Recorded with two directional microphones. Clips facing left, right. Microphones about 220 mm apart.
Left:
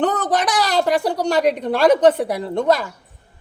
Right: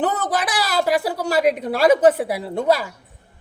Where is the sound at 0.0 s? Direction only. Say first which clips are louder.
Left 3 dB; 5° right (ahead or behind).